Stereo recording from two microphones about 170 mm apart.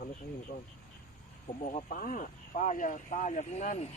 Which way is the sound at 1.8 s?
55° left (ahead or behind).